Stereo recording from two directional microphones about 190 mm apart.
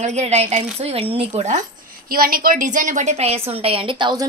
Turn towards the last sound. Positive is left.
turn(degrees=-20)  # may be behind; listen again after turning